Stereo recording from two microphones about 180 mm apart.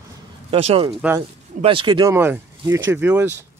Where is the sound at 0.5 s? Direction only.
35° right (ahead or behind); by 3.3 s 10° right (ahead or behind).